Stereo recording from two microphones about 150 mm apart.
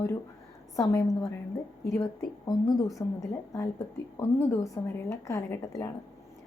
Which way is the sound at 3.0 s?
25° left (ahead or behind).